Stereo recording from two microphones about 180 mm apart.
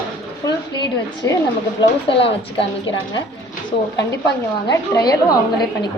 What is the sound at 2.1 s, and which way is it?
A woman's voice, 30° left (ahead or behind).